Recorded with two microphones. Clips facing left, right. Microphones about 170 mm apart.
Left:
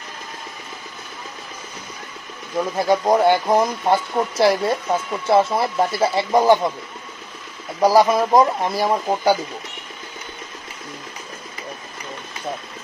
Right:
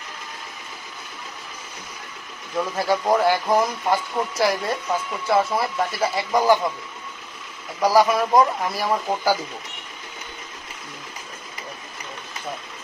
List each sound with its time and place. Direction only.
2.5 s speech: 15° left (ahead or behind)
7.8 s speech: 25° left (ahead or behind)